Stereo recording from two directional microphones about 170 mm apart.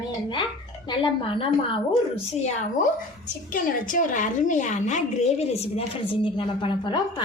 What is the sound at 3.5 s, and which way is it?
A woman's voice, 55° left (ahead or behind).